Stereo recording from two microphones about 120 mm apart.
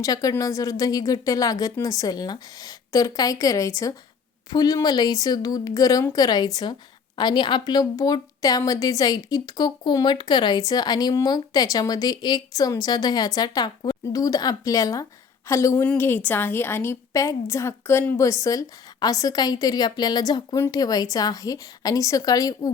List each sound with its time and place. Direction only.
0.0 s a woman's voice: 30° left (ahead or behind)